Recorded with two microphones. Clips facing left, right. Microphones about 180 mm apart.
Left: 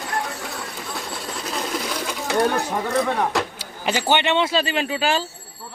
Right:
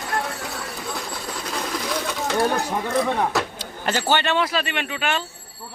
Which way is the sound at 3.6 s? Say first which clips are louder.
Left 1 dB; 10° left (ahead or behind).